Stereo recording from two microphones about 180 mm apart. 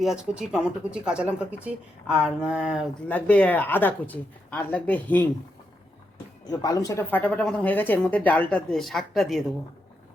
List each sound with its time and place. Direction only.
0.0 s speech: centre (ahead or behind)
3.1 s speech: 10° left (ahead or behind)
6.5 s speech: 20° left (ahead or behind); by 9.4 s centre (ahead or behind)